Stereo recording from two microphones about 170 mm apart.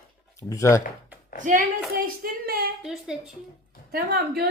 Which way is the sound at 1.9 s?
60° right (ahead or behind).